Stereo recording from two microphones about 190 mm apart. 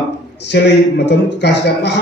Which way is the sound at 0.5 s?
65° left (ahead or behind).